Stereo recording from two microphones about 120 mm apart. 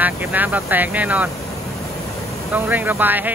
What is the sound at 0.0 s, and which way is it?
Speech, 15° right (ahead or behind).